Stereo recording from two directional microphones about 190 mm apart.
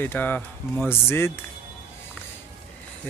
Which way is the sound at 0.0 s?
10° left (ahead or behind).